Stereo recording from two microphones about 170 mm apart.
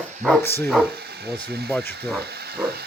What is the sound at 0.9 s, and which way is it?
Speech, 70° right (ahead or behind).